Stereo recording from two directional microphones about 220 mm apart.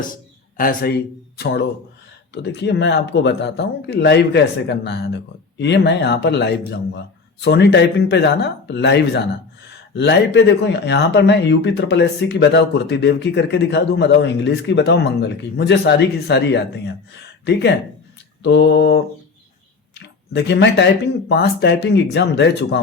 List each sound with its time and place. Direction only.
0.0 s a sound: 40° left (ahead or behind)
1.4 s speech: 45° left (ahead or behind)
20.3 s speech: 50° left (ahead or behind)